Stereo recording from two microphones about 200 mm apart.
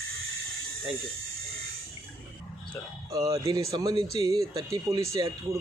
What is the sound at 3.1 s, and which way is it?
Speech, 20° right (ahead or behind).